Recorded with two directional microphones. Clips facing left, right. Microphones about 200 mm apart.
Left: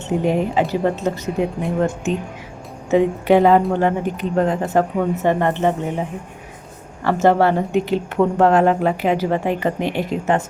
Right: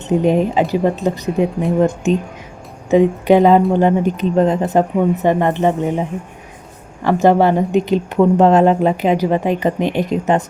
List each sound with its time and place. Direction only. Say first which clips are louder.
0.1 s speech: right 4 dB; 20° right (ahead or behind)
2.9 s speech: right 3 dB; 15° right (ahead or behind)